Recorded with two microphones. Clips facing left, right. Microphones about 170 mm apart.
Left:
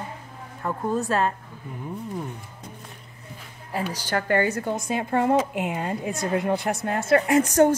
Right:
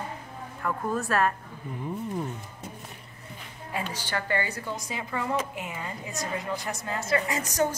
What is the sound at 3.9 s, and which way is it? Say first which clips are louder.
A woman's voice: left 8 dB; 45° left (ahead or behind).